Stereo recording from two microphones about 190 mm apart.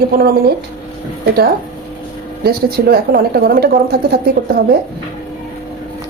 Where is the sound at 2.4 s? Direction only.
50° right (ahead or behind).